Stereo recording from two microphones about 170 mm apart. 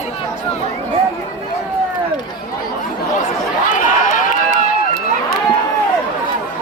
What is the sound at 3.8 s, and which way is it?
Run, 50° left (ahead or behind).